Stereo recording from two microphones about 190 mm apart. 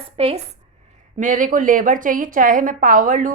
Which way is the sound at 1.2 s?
45° right (ahead or behind).